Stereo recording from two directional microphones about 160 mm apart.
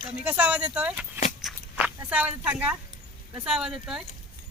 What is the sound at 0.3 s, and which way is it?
Speech, 10° right (ahead or behind).